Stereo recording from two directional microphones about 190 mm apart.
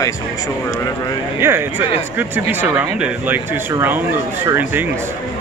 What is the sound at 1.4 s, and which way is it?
Speech, 10° right (ahead or behind).